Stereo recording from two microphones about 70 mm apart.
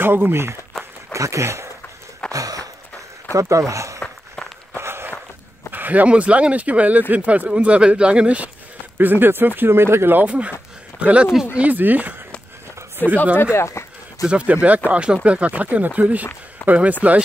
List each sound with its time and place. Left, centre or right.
0.0 s speech: right
1.1 s speech: right
2.3 s a sound: right
3.3 s speech: right
4.7 s walk: right
5.7 s speech: right
8.9 s speech: right
10.2 s speech: centre
13.0 s speech: left
13.4 s speech: left
14.2 s speech: centre